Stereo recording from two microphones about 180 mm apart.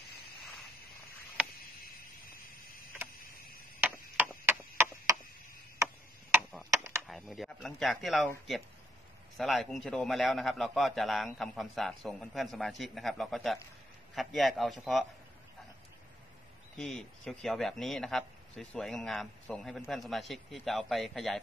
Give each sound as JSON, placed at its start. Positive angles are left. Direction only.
{"t": 3.8, "sound": "chop", "side_deg": -10}
{"t": 5.8, "sound": "tick-tock", "side_deg": -15}
{"t": 6.8, "sound": "a sound", "side_deg": -15}
{"t": 7.1, "sound": "speech", "side_deg": 0}
{"t": 9.4, "sound": "speech", "side_deg": 0}
{"t": 16.7, "sound": "speech", "side_deg": 0}